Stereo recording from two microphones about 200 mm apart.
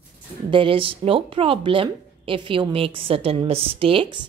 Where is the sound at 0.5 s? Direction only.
25° right (ahead or behind).